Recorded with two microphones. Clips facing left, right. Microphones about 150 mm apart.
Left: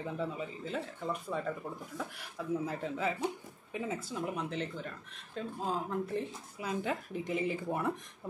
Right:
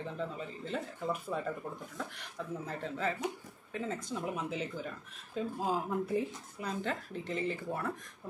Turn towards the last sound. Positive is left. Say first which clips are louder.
# left 2 dB
turn(degrees=15)  # may be behind; listen again after turning